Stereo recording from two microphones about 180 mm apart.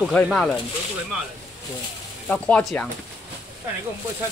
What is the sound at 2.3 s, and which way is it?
Speech, 5° left (ahead or behind).